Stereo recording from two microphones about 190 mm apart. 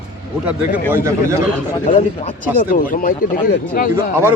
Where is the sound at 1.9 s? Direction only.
35° left (ahead or behind).